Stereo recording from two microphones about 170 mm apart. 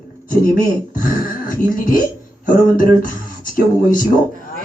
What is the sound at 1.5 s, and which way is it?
Speech, 55° left (ahead or behind).